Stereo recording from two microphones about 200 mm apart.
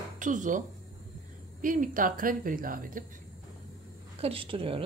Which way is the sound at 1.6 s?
40° right (ahead or behind).